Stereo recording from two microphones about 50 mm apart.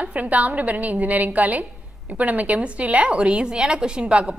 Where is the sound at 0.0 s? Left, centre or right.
Right.